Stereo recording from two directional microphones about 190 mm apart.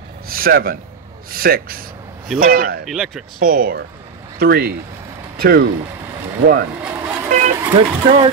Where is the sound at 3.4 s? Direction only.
50° right (ahead or behind).